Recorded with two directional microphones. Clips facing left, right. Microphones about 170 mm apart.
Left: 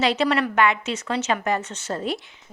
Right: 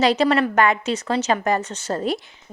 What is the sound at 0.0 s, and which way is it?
A woman's voice, 40° right (ahead or behind).